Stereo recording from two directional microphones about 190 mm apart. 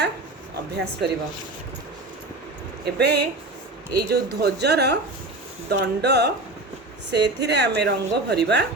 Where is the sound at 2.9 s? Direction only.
60° right (ahead or behind).